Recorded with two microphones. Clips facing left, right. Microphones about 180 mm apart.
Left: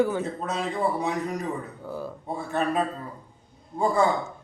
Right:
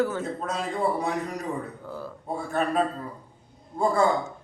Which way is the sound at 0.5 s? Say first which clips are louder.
Even; 5° left (ahead or behind).